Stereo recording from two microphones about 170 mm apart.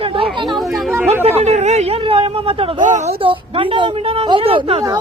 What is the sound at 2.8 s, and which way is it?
Speech, 45° right (ahead or behind).